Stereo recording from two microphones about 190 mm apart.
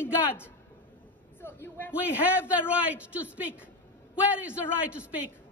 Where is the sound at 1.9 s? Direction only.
5° right (ahead or behind).